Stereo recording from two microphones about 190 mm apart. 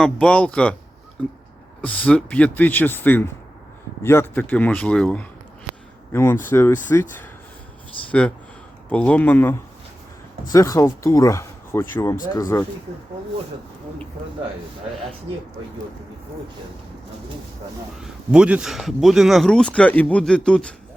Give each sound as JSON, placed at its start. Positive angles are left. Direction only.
{"t": 0.0, "sound": "speech", "side_deg": 5}
{"t": 1.8, "sound": "speech", "side_deg": 5}
{"t": 18.0, "sound": "speech", "side_deg": -5}